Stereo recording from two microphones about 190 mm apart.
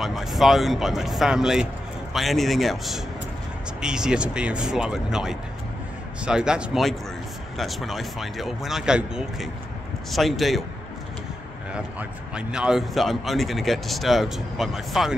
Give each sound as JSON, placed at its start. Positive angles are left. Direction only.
{"t": 0.0, "sound": "a man's voice", "side_deg": 0}
{"t": 11.7, "sound": "a man's voice", "side_deg": -5}